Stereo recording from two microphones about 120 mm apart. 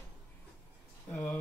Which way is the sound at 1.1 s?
15° left (ahead or behind).